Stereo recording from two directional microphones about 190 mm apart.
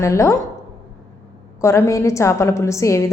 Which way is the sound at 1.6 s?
15° left (ahead or behind).